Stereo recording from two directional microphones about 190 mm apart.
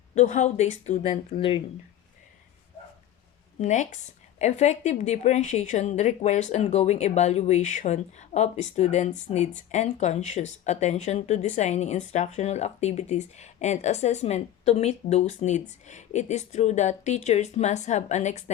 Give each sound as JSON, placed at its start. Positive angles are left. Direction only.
{"t": 0.1, "sound": "a woman's voice", "side_deg": 40}
{"t": 3.6, "sound": "a woman's voice", "side_deg": 40}